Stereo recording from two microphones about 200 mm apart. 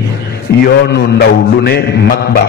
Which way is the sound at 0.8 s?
55° left (ahead or behind).